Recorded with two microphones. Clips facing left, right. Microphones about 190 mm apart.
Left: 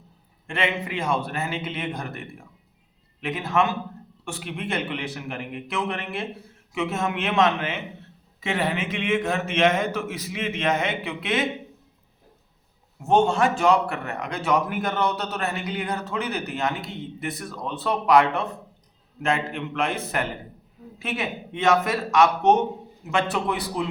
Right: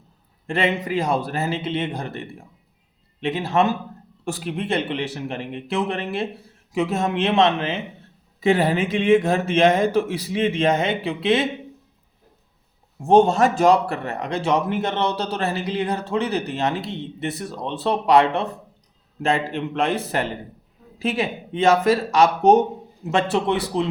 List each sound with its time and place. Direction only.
0.4 s a man's voice: 35° right (ahead or behind)
13.0 s a man's voice: 35° right (ahead or behind)